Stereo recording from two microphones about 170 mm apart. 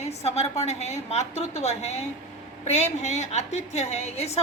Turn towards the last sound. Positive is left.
turn(degrees=40)  # may be behind; listen again after turning